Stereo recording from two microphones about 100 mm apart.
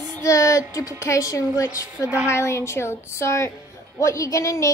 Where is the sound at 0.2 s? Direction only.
30° left (ahead or behind).